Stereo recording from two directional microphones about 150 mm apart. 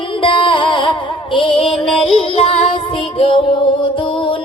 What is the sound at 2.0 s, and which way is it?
Child singing, 40° left (ahead or behind).